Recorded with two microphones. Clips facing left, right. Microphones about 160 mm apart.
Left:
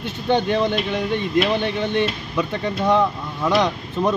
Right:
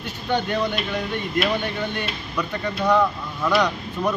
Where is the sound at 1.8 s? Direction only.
25° left (ahead or behind).